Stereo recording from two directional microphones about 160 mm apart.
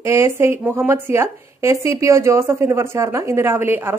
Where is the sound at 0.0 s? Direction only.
15° right (ahead or behind).